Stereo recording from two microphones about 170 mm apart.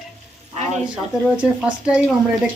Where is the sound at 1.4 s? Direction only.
5° right (ahead or behind).